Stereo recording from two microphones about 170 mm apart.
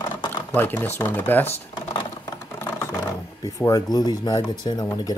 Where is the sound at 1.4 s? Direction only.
25° left (ahead or behind).